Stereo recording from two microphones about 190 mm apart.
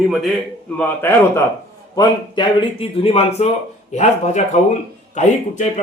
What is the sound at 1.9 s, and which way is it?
A man's voice, 25° left (ahead or behind).